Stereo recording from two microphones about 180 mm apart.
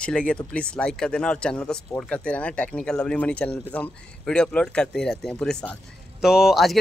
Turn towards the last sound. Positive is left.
turn(degrees=0)  # may be behind; listen again after turning